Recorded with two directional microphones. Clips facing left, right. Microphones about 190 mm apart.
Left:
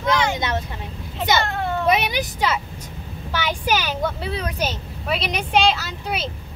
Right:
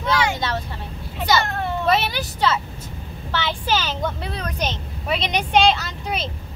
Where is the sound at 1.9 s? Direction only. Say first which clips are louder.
Even; 15° left (ahead or behind).